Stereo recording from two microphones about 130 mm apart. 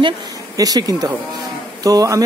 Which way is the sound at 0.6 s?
30° right (ahead or behind).